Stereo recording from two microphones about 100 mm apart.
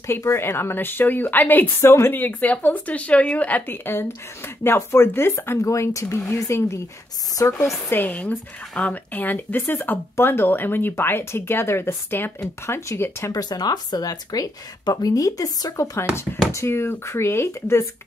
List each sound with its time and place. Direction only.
0.0 s speech: 30° left (ahead or behind)
7.9 s speech: 15° left (ahead or behind)
13.3 s speech: 40° left (ahead or behind)